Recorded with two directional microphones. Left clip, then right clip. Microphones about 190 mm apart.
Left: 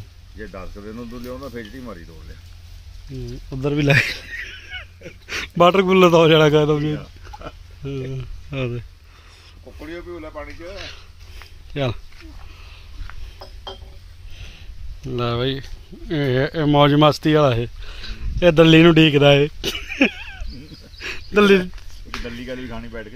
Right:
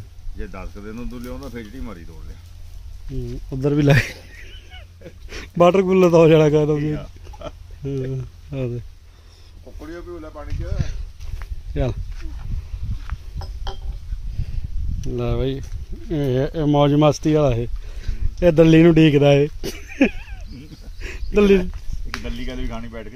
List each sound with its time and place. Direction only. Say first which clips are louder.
0.4 s speech: left 1 dB; 20° right (ahead or behind)
3.6 s honk: left 1 dB; 25° right (ahead or behind); by 4.8 s 10° right (ahead or behind)
5.3 s a man's voice: even; centre (ahead or behind)
7.0 s a sound: right 1 dB; 20° right (ahead or behind)
8.5 s speech: left 1 dB; 10° right (ahead or behind)
9.8 s speech: left 1 dB; 40° left (ahead or behind)
11.7 s speech: left 2 dB; 10° right (ahead or behind)
15.0 s a man's voice: left 2 dB; 10° right (ahead or behind)
21.0 s a sound: left 2 dB; 5° right (ahead or behind)
22.4 s speech: left 1 dB; 25° right (ahead or behind)